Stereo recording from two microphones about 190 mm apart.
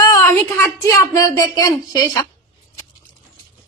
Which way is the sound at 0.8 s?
15° left (ahead or behind).